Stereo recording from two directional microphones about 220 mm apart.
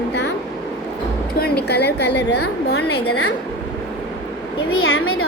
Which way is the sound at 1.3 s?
45° left (ahead or behind).